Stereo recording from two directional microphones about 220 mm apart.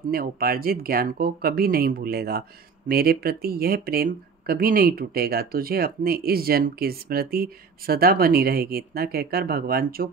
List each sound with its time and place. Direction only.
0.1 s speech: 40° right (ahead or behind)